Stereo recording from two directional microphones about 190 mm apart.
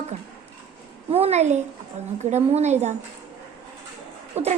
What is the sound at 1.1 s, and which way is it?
A child's voice, 35° right (ahead or behind).